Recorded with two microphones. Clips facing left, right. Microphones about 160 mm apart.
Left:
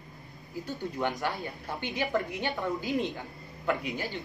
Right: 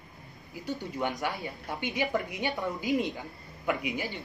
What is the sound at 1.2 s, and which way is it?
A woman's voice, 15° right (ahead or behind).